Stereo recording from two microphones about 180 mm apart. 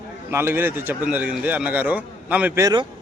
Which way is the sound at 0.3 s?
15° right (ahead or behind).